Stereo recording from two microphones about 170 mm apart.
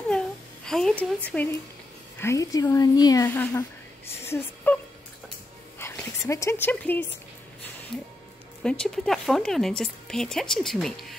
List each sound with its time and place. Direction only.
0.7 s speech: 5° left (ahead or behind)
4.7 s speech: 10° left (ahead or behind)
8.6 s speech: 5° left (ahead or behind)